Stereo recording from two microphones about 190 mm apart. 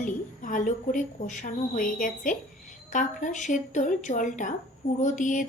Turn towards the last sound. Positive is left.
turn(degrees=40)  # may be behind; listen again after turning